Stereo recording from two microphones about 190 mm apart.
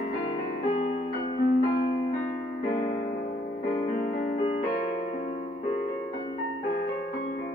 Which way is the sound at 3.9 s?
50° left (ahead or behind).